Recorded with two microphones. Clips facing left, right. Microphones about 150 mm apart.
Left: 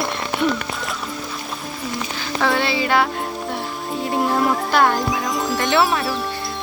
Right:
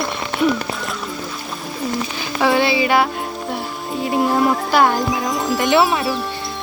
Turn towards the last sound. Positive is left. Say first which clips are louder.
# right 2 dB
turn(degrees=0)  # may be behind; listen again after turning